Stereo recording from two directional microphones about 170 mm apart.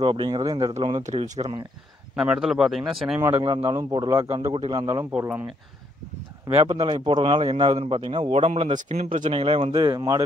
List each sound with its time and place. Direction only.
0.0 s speech: 30° right (ahead or behind)
0.7 s speech: 35° right (ahead or behind)
2.1 s speech: 5° right (ahead or behind)
3.3 s speech: 30° right (ahead or behind)
5.1 s speech: 10° right (ahead or behind)
6.5 s speech: 30° right (ahead or behind)
9.2 s speech: 30° right (ahead or behind)